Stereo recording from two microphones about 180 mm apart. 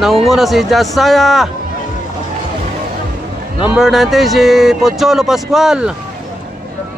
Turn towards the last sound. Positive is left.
turn(degrees=-5)  # may be behind; listen again after turning